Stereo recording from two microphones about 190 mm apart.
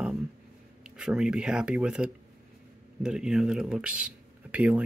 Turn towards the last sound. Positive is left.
turn(degrees=-5)  # may be behind; listen again after turning